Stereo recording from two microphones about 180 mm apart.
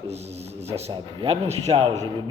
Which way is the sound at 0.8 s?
35° right (ahead or behind).